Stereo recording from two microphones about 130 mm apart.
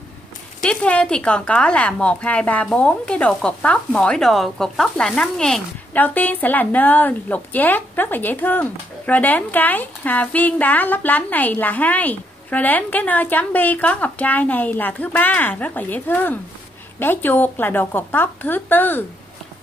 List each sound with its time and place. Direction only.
0.7 s speech: 10° left (ahead or behind)